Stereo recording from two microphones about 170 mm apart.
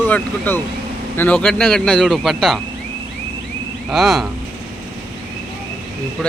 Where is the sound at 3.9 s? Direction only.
Centre (ahead or behind).